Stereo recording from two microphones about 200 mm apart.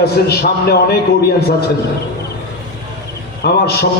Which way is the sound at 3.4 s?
55° left (ahead or behind).